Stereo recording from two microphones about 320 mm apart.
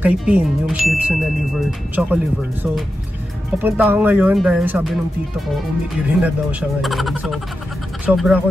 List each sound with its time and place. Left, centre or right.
0.0 s speech: centre
3.6 s speech: centre
6.8 s speech: centre